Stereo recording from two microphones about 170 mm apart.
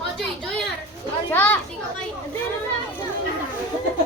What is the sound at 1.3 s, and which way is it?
Speech, 10° left (ahead or behind).